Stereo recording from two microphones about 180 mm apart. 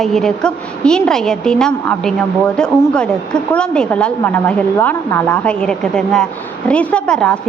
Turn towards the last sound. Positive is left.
turn(degrees=5)  # may be behind; listen again after turning